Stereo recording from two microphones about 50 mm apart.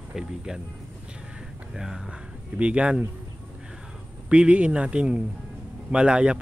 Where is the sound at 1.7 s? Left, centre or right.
Centre.